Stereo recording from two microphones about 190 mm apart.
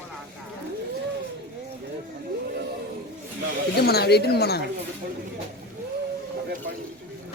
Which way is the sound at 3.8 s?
55° left (ahead or behind).